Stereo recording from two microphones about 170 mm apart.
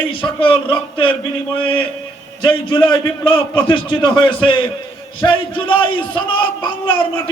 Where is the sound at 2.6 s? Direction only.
30° left (ahead or behind).